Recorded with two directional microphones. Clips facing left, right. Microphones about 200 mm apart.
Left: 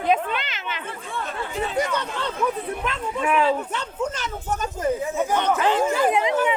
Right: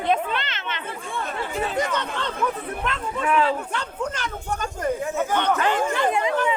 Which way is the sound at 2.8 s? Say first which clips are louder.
Even; centre (ahead or behind).